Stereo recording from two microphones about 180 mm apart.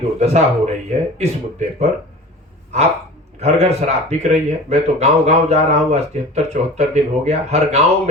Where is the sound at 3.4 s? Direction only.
35° right (ahead or behind).